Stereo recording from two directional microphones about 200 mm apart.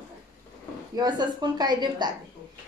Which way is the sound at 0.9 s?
20° right (ahead or behind).